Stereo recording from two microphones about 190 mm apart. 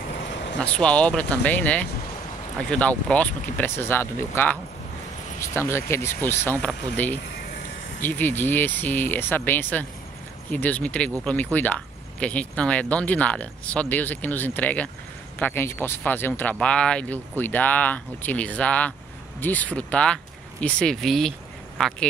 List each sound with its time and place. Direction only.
0.2 s vehicle: 70° left (ahead or behind)
0.6 s speech: 5° left (ahead or behind)